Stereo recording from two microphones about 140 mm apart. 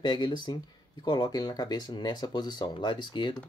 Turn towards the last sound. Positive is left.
turn(degrees=35)  # may be behind; listen again after turning